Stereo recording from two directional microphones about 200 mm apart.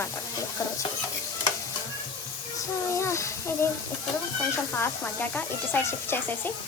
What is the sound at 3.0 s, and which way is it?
Speech, 15° left (ahead or behind).